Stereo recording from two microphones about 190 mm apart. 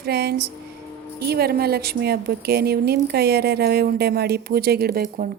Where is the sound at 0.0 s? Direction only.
55° right (ahead or behind).